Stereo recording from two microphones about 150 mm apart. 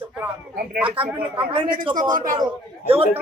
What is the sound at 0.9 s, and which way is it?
A woman's voice, 35° right (ahead or behind).